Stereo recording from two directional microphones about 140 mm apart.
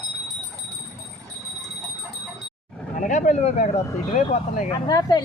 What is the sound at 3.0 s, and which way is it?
Speech, 60° left (ahead or behind).